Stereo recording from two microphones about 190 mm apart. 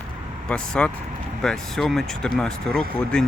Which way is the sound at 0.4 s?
5° left (ahead or behind).